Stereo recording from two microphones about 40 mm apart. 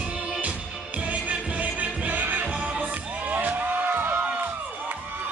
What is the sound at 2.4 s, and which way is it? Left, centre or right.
Music, right.